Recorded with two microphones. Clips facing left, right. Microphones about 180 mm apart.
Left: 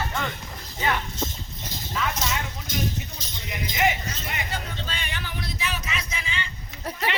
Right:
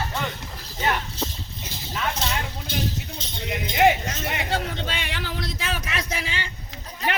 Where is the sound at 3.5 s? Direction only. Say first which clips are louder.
Right 6 dB; 65° right (ahead or behind); by 6.4 s 90° right.